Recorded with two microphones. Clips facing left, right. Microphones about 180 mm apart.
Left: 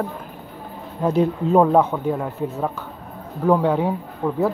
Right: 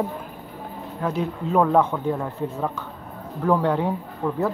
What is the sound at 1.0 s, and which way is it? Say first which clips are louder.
Speech: left 7 dB; 15° left (ahead or behind).